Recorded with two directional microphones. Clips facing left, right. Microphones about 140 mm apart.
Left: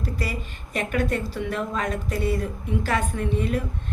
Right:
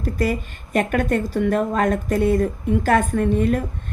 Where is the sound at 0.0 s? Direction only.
50° right (ahead or behind).